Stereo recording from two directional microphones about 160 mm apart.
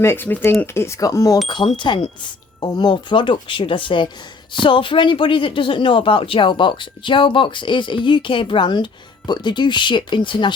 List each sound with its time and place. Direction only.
0.0 s speech: 15° left (ahead or behind); by 10.5 s 30° left (ahead or behind)